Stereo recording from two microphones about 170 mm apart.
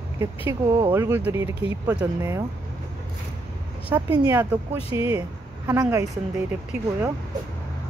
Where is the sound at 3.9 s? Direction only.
10° right (ahead or behind).